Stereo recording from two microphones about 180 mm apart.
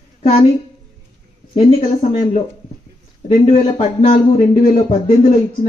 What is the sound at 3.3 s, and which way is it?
Speech, 35° left (ahead or behind).